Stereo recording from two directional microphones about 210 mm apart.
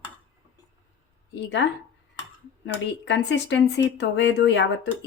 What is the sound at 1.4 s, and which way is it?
Speech, 55° left (ahead or behind).